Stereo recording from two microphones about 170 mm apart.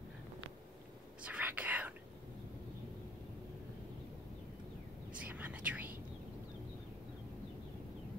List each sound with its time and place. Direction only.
1.2 s whispering: 10° right (ahead or behind)
5.2 s whispering: 10° right (ahead or behind)